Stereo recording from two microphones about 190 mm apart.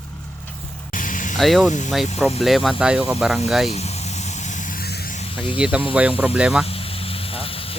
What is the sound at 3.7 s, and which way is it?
Vehicle, 35° left (ahead or behind).